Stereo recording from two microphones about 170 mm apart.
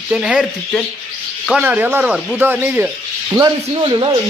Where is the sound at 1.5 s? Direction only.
10° right (ahead or behind).